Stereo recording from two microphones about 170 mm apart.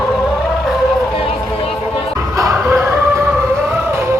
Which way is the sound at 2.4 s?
15° right (ahead or behind).